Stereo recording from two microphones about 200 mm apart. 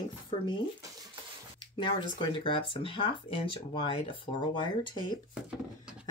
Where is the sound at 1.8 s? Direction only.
25° left (ahead or behind).